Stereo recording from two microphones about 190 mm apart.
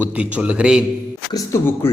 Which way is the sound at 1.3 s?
15° left (ahead or behind).